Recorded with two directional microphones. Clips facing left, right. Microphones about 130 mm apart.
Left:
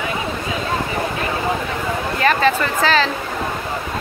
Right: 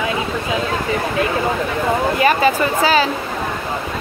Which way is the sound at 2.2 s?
10° right (ahead or behind).